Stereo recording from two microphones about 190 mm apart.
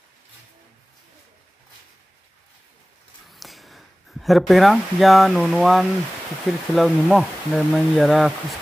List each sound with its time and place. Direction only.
3.3 s speech: centre (ahead or behind)